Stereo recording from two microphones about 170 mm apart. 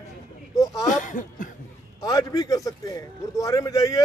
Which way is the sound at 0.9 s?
45° left (ahead or behind).